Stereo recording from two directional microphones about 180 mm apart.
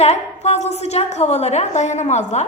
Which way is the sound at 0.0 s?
35° left (ahead or behind).